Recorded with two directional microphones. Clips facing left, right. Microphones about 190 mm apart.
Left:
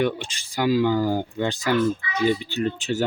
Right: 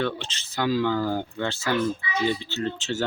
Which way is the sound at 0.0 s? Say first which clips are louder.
Left 4 dB; 10° left (ahead or behind).